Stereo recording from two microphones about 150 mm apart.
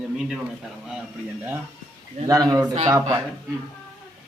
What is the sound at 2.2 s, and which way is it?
Speech, 25° right (ahead or behind).